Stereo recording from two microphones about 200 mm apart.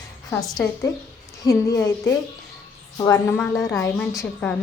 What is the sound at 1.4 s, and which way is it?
A woman's voice, 15° left (ahead or behind).